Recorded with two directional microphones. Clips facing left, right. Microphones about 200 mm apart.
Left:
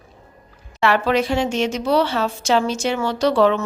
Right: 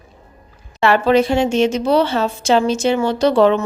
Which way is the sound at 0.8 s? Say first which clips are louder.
Right 4 dB; 25° right (ahead or behind).